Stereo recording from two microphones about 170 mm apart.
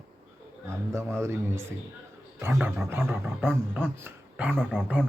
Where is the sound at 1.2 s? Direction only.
15° right (ahead or behind).